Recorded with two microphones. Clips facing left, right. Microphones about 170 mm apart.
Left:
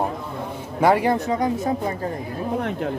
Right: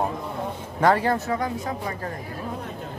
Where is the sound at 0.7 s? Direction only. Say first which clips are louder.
Left 3 dB; 10° left (ahead or behind).